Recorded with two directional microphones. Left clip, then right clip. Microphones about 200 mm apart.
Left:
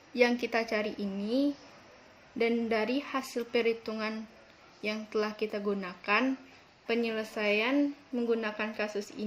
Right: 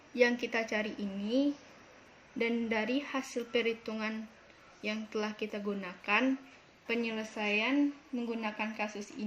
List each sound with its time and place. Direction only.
0.1 s a woman's voice: 50° left (ahead or behind)